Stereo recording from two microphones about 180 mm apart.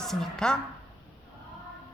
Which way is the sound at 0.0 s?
Centre (ahead or behind).